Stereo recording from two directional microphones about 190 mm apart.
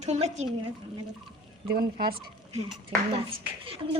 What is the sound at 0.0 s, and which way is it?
Speech, 35° right (ahead or behind).